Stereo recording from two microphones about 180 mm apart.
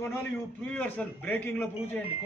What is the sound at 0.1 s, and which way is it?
A man's voice, 10° left (ahead or behind).